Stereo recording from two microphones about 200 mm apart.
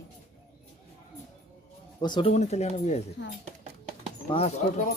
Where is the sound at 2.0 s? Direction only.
25° left (ahead or behind).